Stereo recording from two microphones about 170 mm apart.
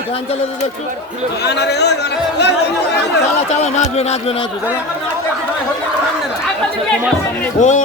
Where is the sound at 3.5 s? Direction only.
40° left (ahead or behind).